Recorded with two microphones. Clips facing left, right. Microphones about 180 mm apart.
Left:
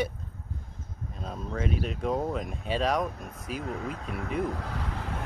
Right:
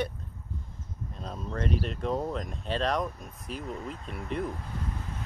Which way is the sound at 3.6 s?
85° left.